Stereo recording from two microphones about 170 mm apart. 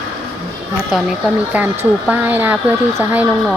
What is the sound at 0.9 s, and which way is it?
A woman's voice, 5° right (ahead or behind).